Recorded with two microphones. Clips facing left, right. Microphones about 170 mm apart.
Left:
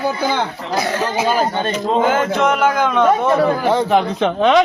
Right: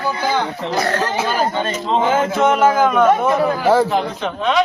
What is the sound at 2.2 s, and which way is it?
A man's voice, centre (ahead or behind).